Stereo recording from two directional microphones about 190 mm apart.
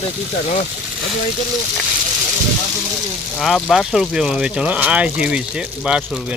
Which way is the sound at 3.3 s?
Centre (ahead or behind).